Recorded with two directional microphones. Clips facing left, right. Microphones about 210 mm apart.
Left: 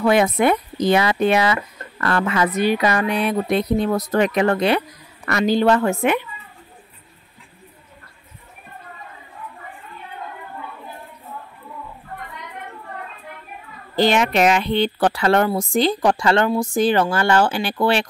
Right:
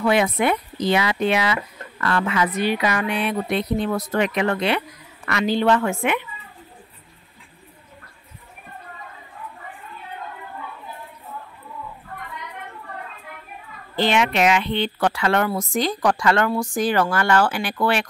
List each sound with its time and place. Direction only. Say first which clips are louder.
0.0 s speech: left 3 dB; 45° left (ahead or behind)
13.9 s speech: left 3 dB; 40° left (ahead or behind)